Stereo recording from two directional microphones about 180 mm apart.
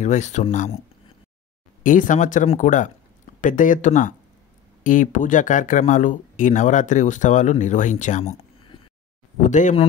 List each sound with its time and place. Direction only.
0.0 s speech: 40° left (ahead or behind)
1.8 s speech: 45° left (ahead or behind)